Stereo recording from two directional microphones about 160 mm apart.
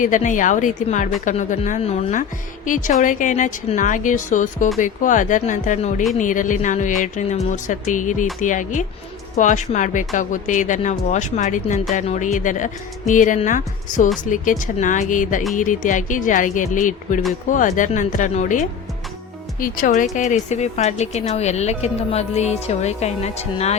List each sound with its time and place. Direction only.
0.0 s speech: 55° left (ahead or behind)